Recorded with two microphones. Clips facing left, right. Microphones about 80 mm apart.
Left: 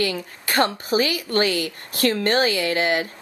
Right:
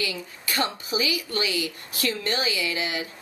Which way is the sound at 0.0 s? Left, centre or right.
Left.